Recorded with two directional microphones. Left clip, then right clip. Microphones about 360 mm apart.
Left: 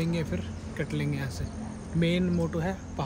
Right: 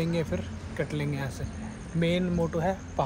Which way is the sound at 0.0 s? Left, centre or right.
Centre.